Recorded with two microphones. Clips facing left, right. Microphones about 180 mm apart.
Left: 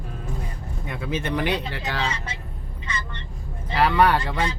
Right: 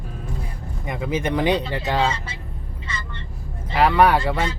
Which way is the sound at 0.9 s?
15° right (ahead or behind).